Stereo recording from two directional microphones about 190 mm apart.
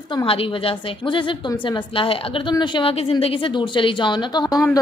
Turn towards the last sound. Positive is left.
turn(degrees=20)  # may be behind; listen again after turning